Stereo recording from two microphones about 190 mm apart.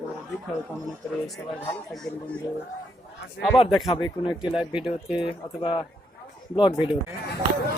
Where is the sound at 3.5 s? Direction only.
30° left (ahead or behind).